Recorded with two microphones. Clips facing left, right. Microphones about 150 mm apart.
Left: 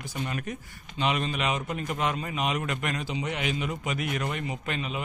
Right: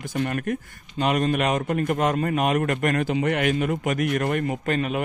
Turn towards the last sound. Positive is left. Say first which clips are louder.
# right 8 dB
turn(degrees=-55)  # may be behind; listen again after turning